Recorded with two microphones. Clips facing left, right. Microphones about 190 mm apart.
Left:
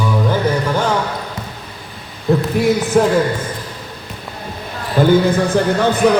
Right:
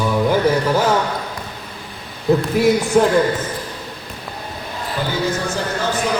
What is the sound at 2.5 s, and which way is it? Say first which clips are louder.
Speech: even; centre (ahead or behind).